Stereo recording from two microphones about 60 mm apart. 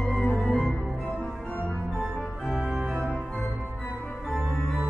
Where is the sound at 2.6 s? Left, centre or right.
Centre.